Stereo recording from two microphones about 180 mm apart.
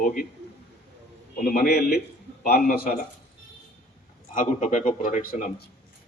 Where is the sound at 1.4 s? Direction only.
55° left (ahead or behind).